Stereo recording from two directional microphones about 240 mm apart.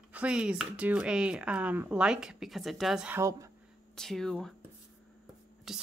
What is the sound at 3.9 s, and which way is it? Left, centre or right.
Speech, centre.